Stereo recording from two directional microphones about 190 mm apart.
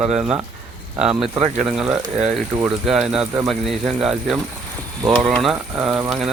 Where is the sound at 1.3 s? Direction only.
35° right (ahead or behind).